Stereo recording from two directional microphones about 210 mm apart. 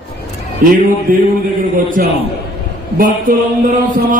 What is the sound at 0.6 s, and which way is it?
Speech, 40° right (ahead or behind).